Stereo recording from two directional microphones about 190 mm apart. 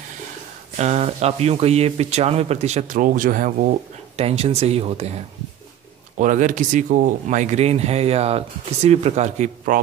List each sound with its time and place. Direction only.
0.7 s speech: 35° right (ahead or behind)
4.2 s speech: 35° right (ahead or behind)